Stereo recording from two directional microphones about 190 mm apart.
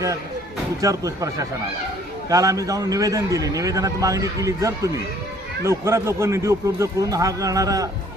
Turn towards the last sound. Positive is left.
turn(degrees=-20)  # may be behind; listen again after turning